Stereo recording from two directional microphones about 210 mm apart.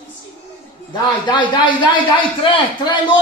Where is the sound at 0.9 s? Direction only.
20° left (ahead or behind).